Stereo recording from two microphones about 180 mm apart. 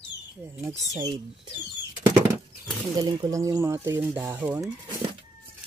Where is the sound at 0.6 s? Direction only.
15° right (ahead or behind).